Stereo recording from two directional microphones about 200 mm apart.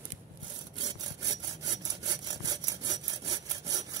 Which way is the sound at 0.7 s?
20° right (ahead or behind).